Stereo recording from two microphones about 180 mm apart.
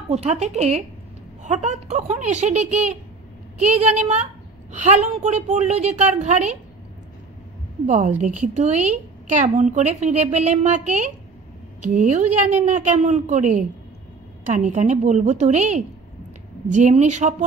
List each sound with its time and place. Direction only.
0.1 s a woman's voice: 40° right (ahead or behind)
7.8 s a woman's voice: 40° right (ahead or behind)